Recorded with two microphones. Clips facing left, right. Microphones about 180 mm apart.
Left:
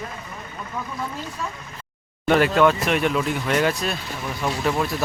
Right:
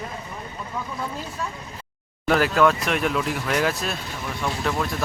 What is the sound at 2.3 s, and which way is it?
Speech, centre (ahead or behind).